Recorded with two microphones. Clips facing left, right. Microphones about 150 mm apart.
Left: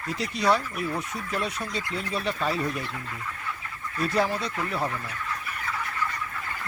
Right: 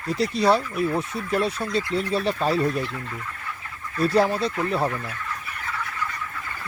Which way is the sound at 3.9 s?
35° right (ahead or behind).